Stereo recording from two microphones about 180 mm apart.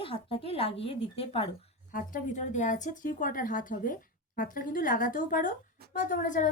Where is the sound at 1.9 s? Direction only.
45° left (ahead or behind).